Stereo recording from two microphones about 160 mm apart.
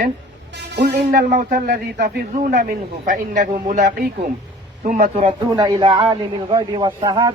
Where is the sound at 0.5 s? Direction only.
80° right; by 5.3 s 50° right (ahead or behind).